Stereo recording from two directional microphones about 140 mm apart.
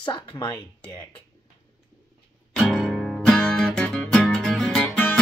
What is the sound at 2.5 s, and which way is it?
Music, centre (ahead or behind).